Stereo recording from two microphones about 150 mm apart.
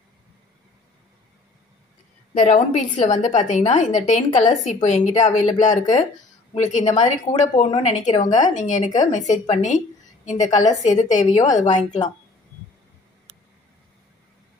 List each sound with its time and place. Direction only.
2.3 s a woman's voice: 50° left (ahead or behind)
10.8 s a woman's voice: 50° left (ahead or behind)